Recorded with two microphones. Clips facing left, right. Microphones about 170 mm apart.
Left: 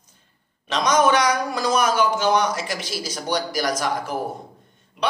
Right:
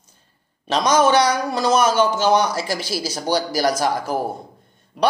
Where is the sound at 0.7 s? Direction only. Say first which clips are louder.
Right 2 dB; 30° right (ahead or behind).